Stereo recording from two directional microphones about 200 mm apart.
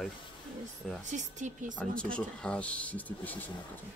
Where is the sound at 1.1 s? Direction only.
35° right (ahead or behind).